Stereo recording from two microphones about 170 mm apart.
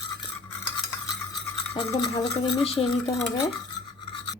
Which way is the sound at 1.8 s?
20° left (ahead or behind).